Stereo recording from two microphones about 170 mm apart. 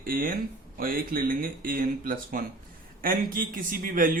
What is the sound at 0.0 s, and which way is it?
A man's voice, 55° right (ahead or behind).